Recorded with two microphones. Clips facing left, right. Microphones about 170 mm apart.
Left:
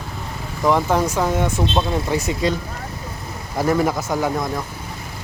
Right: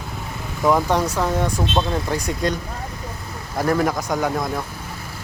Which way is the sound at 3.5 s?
5° left (ahead or behind).